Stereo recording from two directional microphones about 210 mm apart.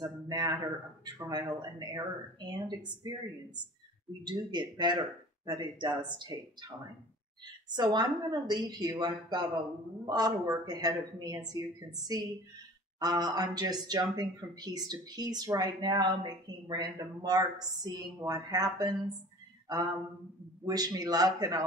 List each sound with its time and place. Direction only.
0.0 s speech: 20° right (ahead or behind)
4.2 s speech: 20° right (ahead or behind)
7.7 s a woman's voice: 20° right (ahead or behind)
13.0 s a woman's voice: 20° right (ahead or behind)